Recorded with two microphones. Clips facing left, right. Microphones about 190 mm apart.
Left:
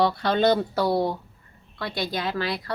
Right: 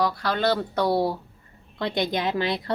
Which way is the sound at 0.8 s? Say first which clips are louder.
Even; centre (ahead or behind).